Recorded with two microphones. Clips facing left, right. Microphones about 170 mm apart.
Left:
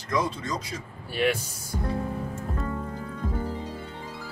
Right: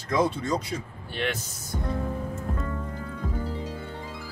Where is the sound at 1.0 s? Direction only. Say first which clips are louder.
Left 7 dB; 10° left (ahead or behind).